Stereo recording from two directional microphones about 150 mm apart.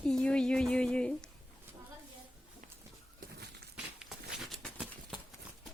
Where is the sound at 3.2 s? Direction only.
70° right (ahead or behind).